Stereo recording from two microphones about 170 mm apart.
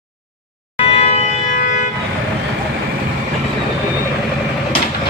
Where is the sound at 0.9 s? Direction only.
35° left (ahead or behind).